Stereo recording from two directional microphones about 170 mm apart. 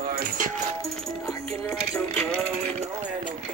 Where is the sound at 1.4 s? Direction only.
35° right (ahead or behind).